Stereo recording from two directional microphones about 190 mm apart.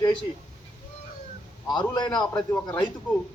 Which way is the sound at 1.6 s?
20° left (ahead or behind).